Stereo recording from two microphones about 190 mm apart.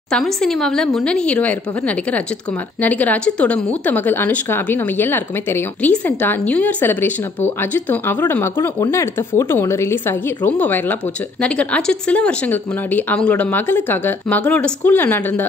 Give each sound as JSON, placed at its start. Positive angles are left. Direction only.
{"t": 0.1, "sound": "a woman's voice", "side_deg": 0}